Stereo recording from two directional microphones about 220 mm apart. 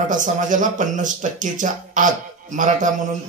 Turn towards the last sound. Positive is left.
turn(degrees=-35)  # may be behind; listen again after turning